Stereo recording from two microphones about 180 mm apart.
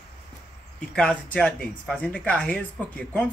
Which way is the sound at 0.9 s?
5° left (ahead or behind).